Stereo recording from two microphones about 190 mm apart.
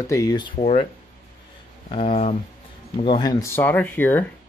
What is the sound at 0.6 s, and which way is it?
Speech, 35° left (ahead or behind).